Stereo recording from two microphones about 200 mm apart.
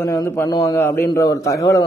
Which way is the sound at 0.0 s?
15° left (ahead or behind).